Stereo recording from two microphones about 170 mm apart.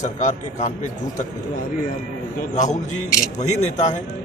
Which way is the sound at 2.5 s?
45° left (ahead or behind).